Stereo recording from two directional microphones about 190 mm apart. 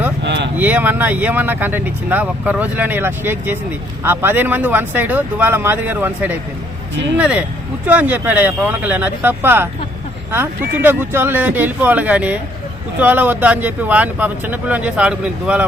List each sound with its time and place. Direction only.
0.3 s a sound: 70° right (ahead or behind)
0.5 s speech: 10° right (ahead or behind)
10.8 s speech: 10° right (ahead or behind)